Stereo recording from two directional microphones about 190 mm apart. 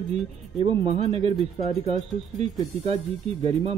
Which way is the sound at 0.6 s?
30° right (ahead or behind).